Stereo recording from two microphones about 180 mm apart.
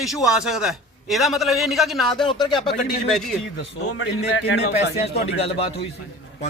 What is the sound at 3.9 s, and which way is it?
Speech, 85° left.